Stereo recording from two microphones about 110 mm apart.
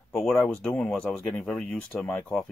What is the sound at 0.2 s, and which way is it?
Speech, 5° left (ahead or behind).